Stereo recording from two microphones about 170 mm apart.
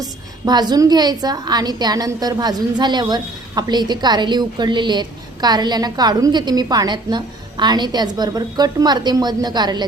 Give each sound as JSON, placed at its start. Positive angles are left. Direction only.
{"t": 0.0, "sound": "a woman's voice", "side_deg": -25}